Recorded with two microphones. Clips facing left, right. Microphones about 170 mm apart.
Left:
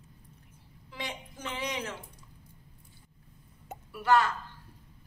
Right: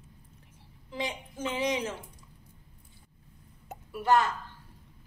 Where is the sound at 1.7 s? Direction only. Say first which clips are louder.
Right 5 dB; 20° right (ahead or behind).